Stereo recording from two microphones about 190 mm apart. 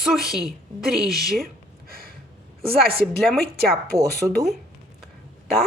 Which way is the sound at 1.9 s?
50° right (ahead or behind).